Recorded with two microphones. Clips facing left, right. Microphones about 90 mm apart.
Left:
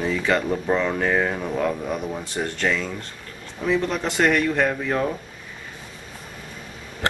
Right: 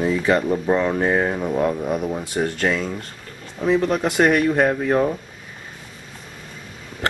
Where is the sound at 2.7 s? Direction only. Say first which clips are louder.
Left 1 dB; 30° right (ahead or behind).